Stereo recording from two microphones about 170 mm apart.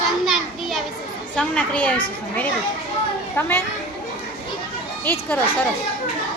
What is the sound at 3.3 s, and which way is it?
Speech, 10° left (ahead or behind).